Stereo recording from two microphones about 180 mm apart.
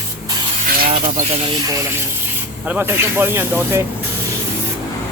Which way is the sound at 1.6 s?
20° right (ahead or behind).